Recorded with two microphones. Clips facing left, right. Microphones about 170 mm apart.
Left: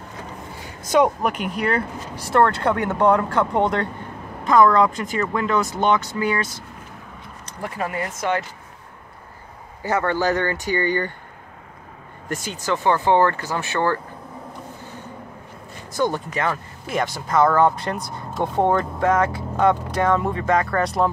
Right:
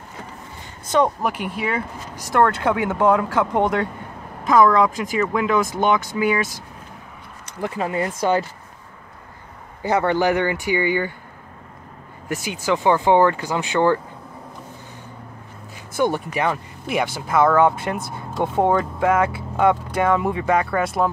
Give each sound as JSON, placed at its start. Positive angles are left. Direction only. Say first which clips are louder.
{"t": 1.2, "sound": "speech", "louder": "left 1 dB", "side_deg": -5}
{"t": 7.6, "sound": "speech", "louder": "right 4 dB", "side_deg": -25}
{"t": 9.8, "sound": "speech", "louder": "right 2 dB", "side_deg": -15}
{"t": 12.3, "sound": "speech", "louder": "right 3 dB", "side_deg": -15}
{"t": 16.0, "sound": "speech", "louder": "right 2 dB", "side_deg": -15}